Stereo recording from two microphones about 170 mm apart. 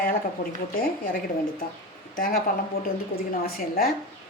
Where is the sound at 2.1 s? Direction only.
55° left (ahead or behind).